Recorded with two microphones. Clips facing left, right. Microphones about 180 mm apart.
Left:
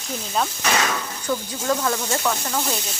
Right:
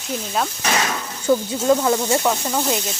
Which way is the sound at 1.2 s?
25° right (ahead or behind).